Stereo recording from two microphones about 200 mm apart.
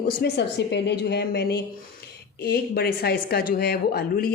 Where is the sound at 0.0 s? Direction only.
55° left (ahead or behind).